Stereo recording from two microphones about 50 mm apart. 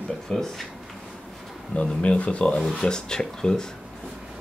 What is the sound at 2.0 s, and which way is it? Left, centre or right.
Speech, left.